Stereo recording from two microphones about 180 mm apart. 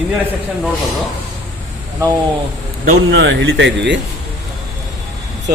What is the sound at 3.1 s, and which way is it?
Speech, 85° right.